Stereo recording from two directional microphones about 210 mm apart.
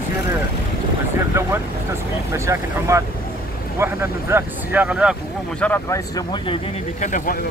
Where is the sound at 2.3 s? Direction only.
15° right (ahead or behind).